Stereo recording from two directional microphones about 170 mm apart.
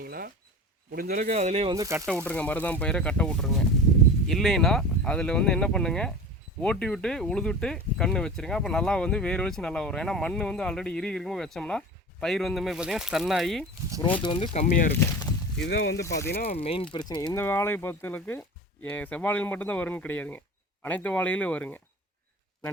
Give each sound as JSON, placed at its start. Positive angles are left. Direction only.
{"t": 0.0, "sound": "a sound", "side_deg": -60}
{"t": 0.9, "sound": "a man's voice", "side_deg": -60}
{"t": 1.3, "sound": "speech", "side_deg": -40}
{"t": 1.7, "sound": "speech", "side_deg": -20}
{"t": 2.0, "sound": "speech", "side_deg": 5}
{"t": 14.2, "sound": "speech", "side_deg": 30}
{"t": 14.6, "sound": "speech", "side_deg": 50}
{"t": 14.9, "sound": "speech", "side_deg": 20}
{"t": 15.5, "sound": "speech", "side_deg": 90}
{"t": 16.3, "sound": "speech", "side_deg": 60}
{"t": 16.6, "sound": "speech", "side_deg": 35}